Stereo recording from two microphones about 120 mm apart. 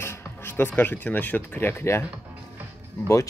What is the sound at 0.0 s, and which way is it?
Speech, 20° left (ahead or behind).